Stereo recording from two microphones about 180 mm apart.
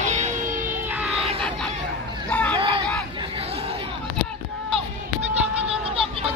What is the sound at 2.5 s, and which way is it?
Hubbub, 30° right (ahead or behind).